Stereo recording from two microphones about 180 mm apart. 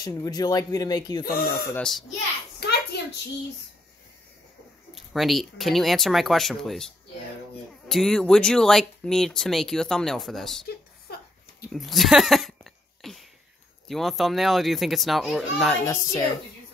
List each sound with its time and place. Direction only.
0.0 s speech: 20° left (ahead or behind)
1.2 s speech: 55° left (ahead or behind)
1.8 s speech: centre (ahead or behind)
2.6 s a sound: 65° left (ahead or behind)
4.9 s speech: centre (ahead or behind)
7.9 s speech: centre (ahead or behind)
11.7 s a sound: centre (ahead or behind)
13.8 s speech: centre (ahead or behind)
15.9 s speech: 20° left (ahead or behind)